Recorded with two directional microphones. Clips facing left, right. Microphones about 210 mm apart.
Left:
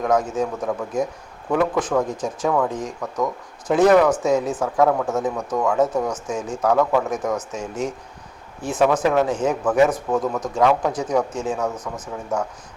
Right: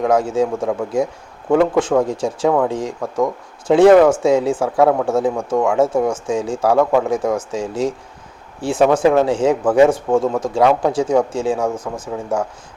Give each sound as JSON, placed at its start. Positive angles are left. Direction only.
{"t": 0.0, "sound": "speech", "side_deg": -30}